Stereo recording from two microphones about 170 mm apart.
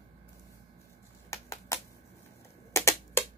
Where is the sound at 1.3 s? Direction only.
15° left (ahead or behind).